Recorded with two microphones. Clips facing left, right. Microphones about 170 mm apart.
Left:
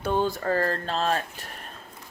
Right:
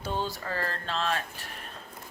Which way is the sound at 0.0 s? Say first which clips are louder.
Left 7 dB; 55° left (ahead or behind).